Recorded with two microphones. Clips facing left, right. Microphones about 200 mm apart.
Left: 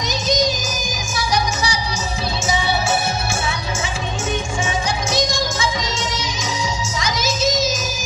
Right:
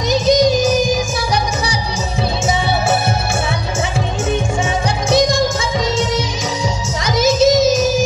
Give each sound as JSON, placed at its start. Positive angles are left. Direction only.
{"t": 0.1, "sound": "music", "side_deg": -55}
{"t": 7.0, "sound": "child singing", "side_deg": -55}